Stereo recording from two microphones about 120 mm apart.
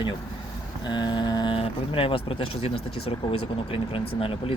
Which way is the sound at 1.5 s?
50° left (ahead or behind).